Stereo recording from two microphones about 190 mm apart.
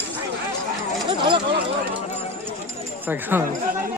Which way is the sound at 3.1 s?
10° right (ahead or behind).